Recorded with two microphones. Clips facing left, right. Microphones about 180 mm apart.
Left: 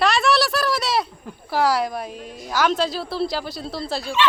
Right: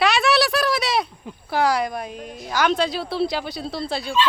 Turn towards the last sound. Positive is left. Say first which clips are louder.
# right 1 dB
turn(degrees=0)  # may be behind; listen again after turning